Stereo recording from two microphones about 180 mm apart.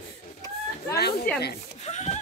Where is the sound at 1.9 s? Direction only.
40° left (ahead or behind).